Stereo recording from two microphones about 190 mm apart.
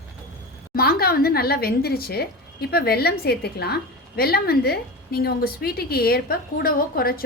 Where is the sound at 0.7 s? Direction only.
50° left (ahead or behind).